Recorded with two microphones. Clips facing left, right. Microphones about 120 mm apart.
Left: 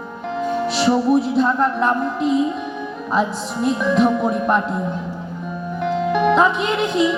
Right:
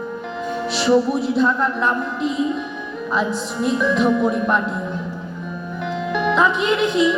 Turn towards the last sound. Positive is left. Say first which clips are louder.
# right 1 dB
turn(degrees=45)  # may be behind; listen again after turning